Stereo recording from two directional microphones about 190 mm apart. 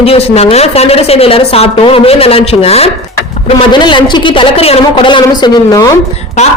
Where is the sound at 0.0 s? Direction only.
30° left (ahead or behind).